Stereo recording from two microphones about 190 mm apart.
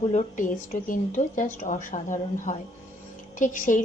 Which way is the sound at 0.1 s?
40° left (ahead or behind).